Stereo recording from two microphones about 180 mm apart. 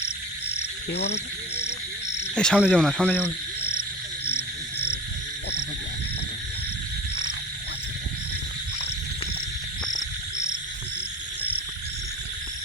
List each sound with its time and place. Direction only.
0.5 s frog: 65° left (ahead or behind)
2.3 s speech: 5° left (ahead or behind)